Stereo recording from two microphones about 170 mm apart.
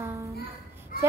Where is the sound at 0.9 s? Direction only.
55° left (ahead or behind).